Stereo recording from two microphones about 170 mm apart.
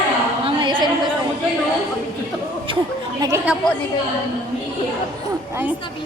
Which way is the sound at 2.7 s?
30° right (ahead or behind).